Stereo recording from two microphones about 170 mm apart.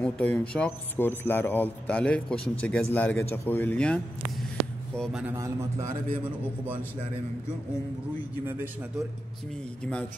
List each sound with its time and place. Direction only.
0.0 s a man's voice: 5° left (ahead or behind)
5.3 s a man's voice: 15° right (ahead or behind)